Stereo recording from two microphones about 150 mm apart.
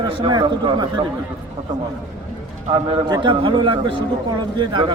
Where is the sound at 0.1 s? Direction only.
30° right (ahead or behind).